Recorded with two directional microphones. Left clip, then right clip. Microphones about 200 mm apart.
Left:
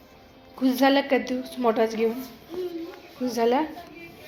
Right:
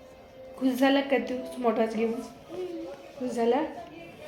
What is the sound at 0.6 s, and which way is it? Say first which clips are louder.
A woman's voice: left 4 dB; 25° left (ahead or behind).